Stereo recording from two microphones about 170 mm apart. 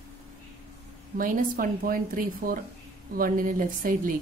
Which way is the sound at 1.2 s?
55° right (ahead or behind).